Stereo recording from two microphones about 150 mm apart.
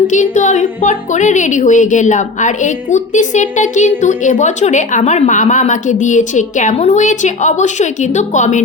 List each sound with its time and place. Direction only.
0.1 s a woman's voice: 55° left (ahead or behind)